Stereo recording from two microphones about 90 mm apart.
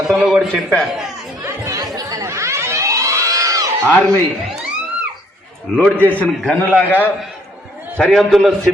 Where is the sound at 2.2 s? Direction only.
30° right (ahead or behind).